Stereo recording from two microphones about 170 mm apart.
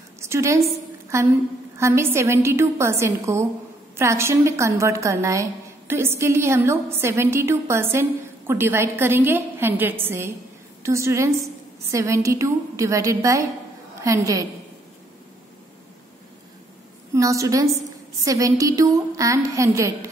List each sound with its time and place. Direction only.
0.2 s a woman's voice: 15° right (ahead or behind)
17.1 s a woman's voice: 20° right (ahead or behind)